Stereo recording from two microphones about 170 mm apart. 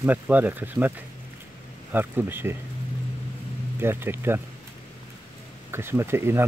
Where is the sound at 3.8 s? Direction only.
15° right (ahead or behind).